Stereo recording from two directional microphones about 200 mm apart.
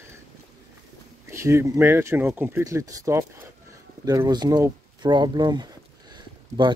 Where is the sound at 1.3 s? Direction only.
15° right (ahead or behind).